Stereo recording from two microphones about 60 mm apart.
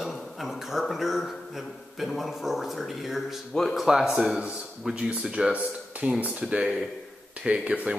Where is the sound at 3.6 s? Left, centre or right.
Centre.